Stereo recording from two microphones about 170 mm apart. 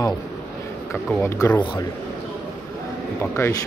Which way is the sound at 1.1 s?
10° left (ahead or behind).